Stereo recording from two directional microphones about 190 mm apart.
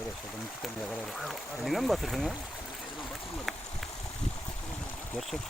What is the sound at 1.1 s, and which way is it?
Speech, centre (ahead or behind).